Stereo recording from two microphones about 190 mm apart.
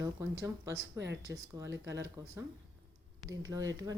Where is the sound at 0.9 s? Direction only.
70° right (ahead or behind).